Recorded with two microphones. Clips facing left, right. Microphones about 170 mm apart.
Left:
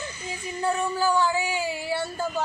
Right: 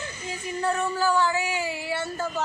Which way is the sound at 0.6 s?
15° left (ahead or behind).